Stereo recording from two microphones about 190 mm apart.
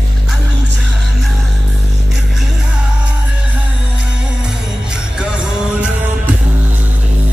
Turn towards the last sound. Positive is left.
turn(degrees=-5)  # may be behind; listen again after turning